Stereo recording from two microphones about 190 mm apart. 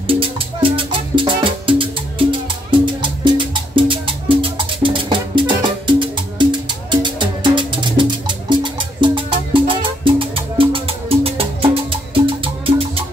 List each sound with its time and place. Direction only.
0.0 s music: 30° right (ahead or behind)